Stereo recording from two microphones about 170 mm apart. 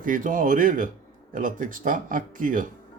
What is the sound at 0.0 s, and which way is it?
Speech, 50° right (ahead or behind).